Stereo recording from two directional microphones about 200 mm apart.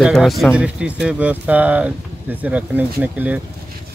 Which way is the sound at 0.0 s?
Centre (ahead or behind).